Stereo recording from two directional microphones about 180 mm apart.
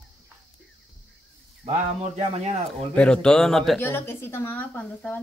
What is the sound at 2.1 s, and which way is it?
Speech, 35° right (ahead or behind).